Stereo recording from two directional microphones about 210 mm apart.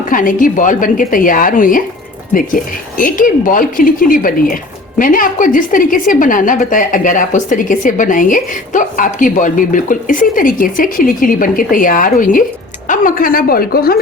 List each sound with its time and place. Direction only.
0.1 s a woman's voice: 40° left (ahead or behind)
3.0 s a woman's voice: 40° left (ahead or behind)